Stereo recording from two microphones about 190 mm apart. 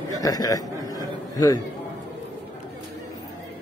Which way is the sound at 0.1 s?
20° left (ahead or behind).